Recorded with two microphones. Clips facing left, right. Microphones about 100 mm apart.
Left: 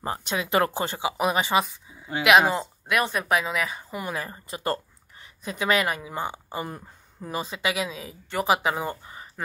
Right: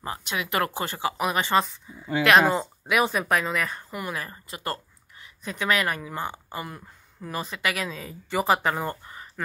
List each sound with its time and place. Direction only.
0.0 s speech: 30° left (ahead or behind)
1.4 s speech: 10° left (ahead or behind)
2.5 s speech: 5° right (ahead or behind)
3.9 s speech: 25° left (ahead or behind)
6.6 s speech: 30° left (ahead or behind)
7.9 s speech: 5° left (ahead or behind)
8.6 s speech: 10° left (ahead or behind)